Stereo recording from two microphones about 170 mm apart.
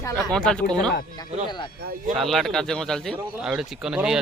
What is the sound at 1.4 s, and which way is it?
Speech, 25° left (ahead or behind).